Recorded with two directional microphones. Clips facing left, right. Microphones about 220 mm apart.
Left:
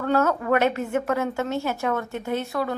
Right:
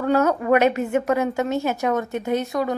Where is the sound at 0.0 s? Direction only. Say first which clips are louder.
Right 3 dB; 15° right (ahead or behind).